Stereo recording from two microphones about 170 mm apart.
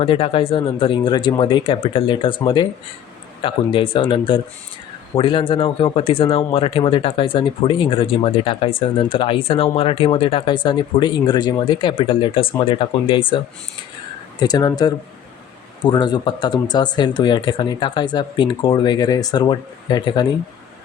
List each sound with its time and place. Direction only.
0.0 s speech: 35° left (ahead or behind)